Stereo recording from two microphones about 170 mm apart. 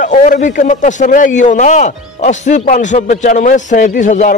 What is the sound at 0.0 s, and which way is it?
A man's voice, 45° left (ahead or behind).